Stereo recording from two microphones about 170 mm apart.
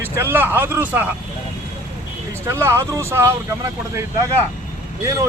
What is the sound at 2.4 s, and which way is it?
Speech, 15° right (ahead or behind).